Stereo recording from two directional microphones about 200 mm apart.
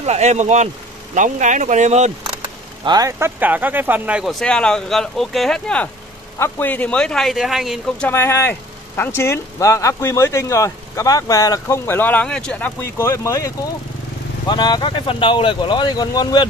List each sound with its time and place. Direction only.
0.0 s speech: 35° right (ahead or behind)
2.8 s a man's voice: 20° right (ahead or behind); by 16.4 s 20° left (ahead or behind)